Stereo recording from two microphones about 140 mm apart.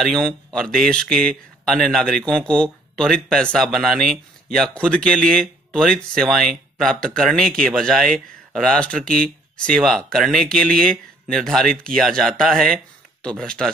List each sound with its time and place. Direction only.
0.0 s speech: 5° left (ahead or behind)